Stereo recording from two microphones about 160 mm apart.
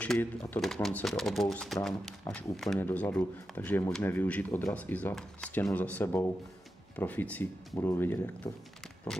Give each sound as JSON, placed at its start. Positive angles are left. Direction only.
{"t": 0.0, "sound": "speech", "side_deg": 5}